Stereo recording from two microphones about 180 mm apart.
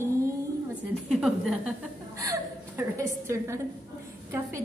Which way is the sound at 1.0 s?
Centre (ahead or behind).